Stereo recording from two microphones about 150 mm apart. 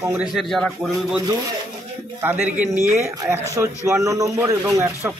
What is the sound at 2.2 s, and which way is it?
Speech, 10° right (ahead or behind).